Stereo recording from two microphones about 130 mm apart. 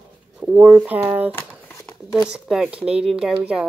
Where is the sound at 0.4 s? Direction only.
10° right (ahead or behind).